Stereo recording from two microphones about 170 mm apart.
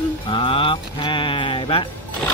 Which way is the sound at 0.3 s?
30° left (ahead or behind).